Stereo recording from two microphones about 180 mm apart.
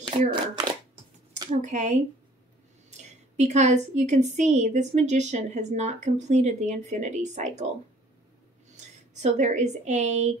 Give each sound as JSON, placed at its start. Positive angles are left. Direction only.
{"t": 0.0, "sound": "speech", "side_deg": -25}
{"t": 1.5, "sound": "speech", "side_deg": -40}
{"t": 3.3, "sound": "a woman's voice", "side_deg": -40}
{"t": 8.7, "sound": "speech", "side_deg": -40}